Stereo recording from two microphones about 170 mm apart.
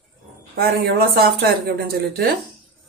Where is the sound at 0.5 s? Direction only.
65° right (ahead or behind).